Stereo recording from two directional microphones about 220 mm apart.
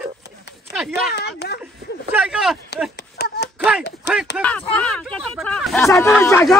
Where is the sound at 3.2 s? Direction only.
45° left (ahead or behind).